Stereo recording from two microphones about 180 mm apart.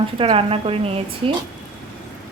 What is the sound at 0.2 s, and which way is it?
Speech, 30° right (ahead or behind).